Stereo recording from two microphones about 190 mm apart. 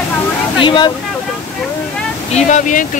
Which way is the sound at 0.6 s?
25° left (ahead or behind).